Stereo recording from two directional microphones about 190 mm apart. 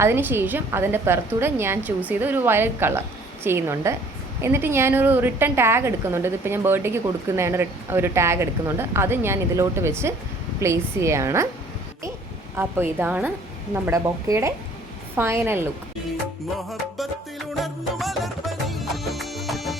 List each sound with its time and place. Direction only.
0.0 s a woman's voice: 10° right (ahead or behind)
12.5 s a woman's voice: 10° right (ahead or behind)
16.6 s music: centre (ahead or behind)